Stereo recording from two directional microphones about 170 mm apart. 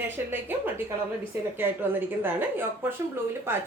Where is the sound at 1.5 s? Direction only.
10° right (ahead or behind).